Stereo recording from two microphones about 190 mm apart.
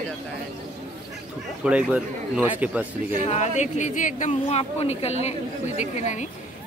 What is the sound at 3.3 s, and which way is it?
Speech, 35° left (ahead or behind).